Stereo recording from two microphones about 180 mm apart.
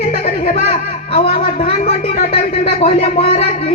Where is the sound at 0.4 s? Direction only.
35° left (ahead or behind).